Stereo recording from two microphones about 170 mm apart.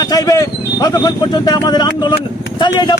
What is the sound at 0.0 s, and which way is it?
A man's voice, 20° left (ahead or behind).